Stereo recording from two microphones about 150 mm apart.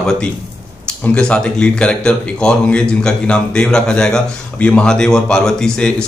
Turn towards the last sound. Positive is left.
turn(degrees=5)  # may be behind; listen again after turning